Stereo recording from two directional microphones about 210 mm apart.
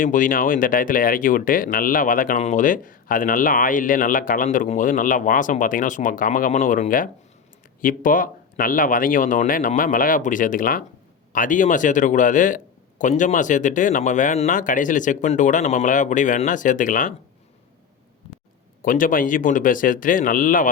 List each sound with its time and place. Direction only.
0.0 s speech: 40° left (ahead or behind)
18.8 s speech: 40° left (ahead or behind)